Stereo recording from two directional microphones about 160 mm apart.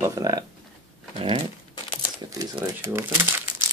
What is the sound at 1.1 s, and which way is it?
Dog, 35° right (ahead or behind).